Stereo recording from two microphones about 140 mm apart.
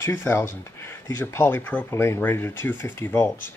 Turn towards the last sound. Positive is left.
turn(degrees=15)  # may be behind; listen again after turning